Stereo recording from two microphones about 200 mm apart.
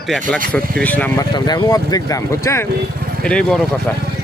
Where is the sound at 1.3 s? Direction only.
20° left (ahead or behind); by 3.6 s 5° left (ahead or behind).